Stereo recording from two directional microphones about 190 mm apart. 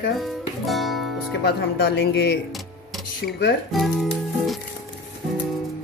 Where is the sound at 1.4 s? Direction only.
60° left (ahead or behind).